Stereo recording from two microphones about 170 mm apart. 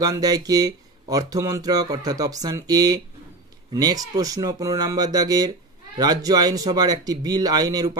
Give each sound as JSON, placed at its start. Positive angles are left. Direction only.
{"t": 0.0, "sound": "speech", "side_deg": -20}